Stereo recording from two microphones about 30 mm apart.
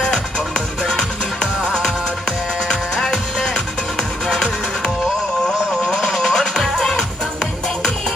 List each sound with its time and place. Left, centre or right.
3.0 s music: centre
6.0 s music: centre